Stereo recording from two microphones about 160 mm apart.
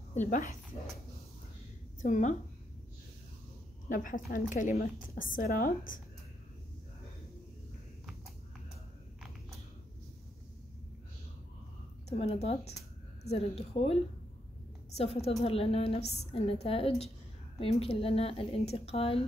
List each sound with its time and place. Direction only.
0.3 s speech: 55° left (ahead or behind)
2.0 s a woman's voice: 50° left (ahead or behind)
3.9 s a woman's voice: 55° left (ahead or behind)
12.1 s speech: 40° left (ahead or behind)
15.0 s speech: 40° left (ahead or behind)